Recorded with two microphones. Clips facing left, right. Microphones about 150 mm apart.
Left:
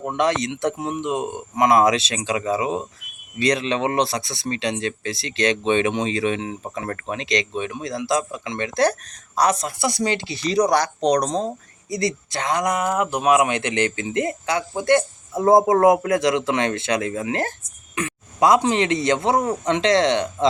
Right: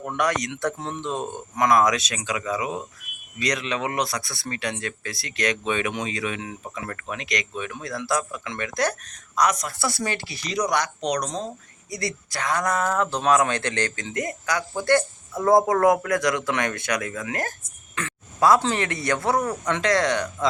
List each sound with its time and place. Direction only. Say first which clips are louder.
0.0 s speech: left 4 dB; 25° left (ahead or behind)
9.7 s speech: left 5 dB; 20° left (ahead or behind)